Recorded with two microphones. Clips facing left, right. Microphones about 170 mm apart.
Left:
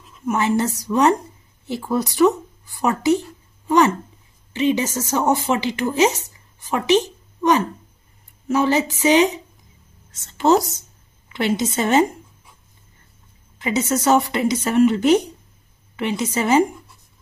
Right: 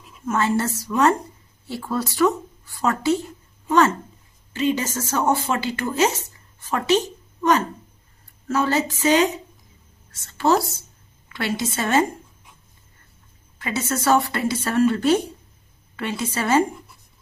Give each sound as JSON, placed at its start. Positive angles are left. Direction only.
{"t": 0.2, "sound": "a woman's voice", "side_deg": 15}
{"t": 13.6, "sound": "a woman's voice", "side_deg": 15}